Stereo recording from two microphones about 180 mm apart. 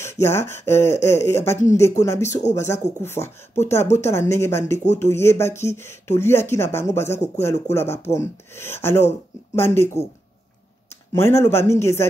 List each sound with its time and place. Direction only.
0.0 s speech: 15° left (ahead or behind)